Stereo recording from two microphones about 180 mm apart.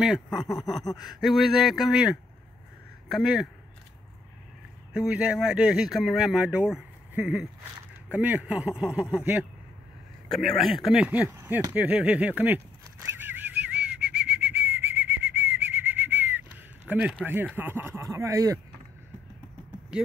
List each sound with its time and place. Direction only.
0.0 s speech: 5° right (ahead or behind)
4.9 s speech: 5° right (ahead or behind)
13.2 s bird: 10° right (ahead or behind)
17.6 s speech: 10° right (ahead or behind)